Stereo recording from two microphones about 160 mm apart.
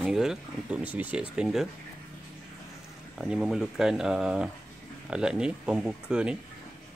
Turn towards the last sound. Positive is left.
turn(degrees=-5)  # may be behind; listen again after turning